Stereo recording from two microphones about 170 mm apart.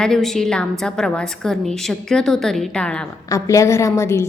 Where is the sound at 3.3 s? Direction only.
15° left (ahead or behind).